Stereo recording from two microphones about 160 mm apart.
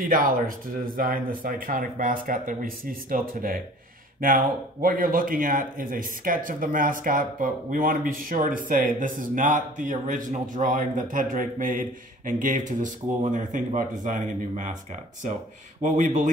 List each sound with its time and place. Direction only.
0.0 s speech: 60° right (ahead or behind)